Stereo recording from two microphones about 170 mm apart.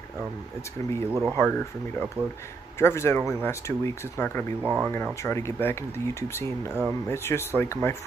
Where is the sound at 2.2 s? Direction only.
10° right (ahead or behind).